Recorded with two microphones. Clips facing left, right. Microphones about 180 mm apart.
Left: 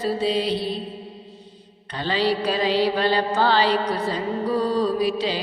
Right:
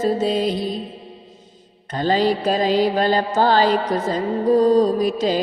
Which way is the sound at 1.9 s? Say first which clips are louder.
Right 4 dB; 45° right (ahead or behind).